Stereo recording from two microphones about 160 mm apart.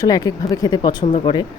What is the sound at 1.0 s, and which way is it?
Speech, 40° left (ahead or behind).